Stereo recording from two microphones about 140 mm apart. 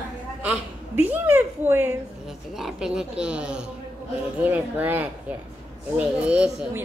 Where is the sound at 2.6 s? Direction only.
5° right (ahead or behind).